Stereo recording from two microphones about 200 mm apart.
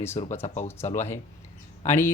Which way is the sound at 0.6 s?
10° left (ahead or behind).